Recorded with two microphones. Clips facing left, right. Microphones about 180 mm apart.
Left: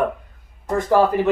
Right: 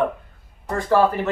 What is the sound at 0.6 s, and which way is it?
Speech, 20° left (ahead or behind).